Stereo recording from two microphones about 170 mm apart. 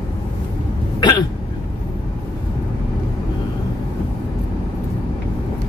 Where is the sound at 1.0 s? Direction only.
25° left (ahead or behind).